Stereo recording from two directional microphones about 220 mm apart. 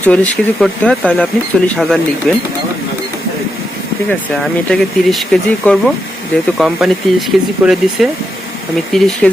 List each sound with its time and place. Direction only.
0.0 s speech: 5° left (ahead or behind)
4.4 s speech: centre (ahead or behind)